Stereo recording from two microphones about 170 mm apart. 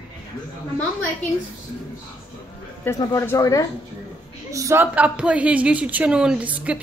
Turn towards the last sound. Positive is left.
turn(degrees=-10)  # may be behind; listen again after turning